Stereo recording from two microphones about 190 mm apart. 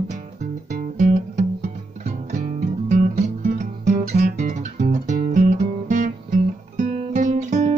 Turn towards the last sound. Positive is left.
turn(degrees=-40)  # may be behind; listen again after turning